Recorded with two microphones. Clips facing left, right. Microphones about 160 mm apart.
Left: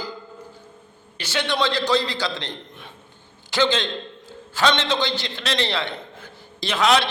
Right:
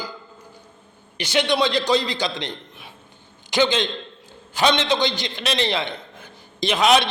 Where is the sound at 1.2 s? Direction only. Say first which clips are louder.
Right 3 dB; 15° right (ahead or behind).